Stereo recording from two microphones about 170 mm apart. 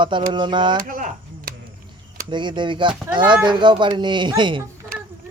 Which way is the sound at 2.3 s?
25° right (ahead or behind).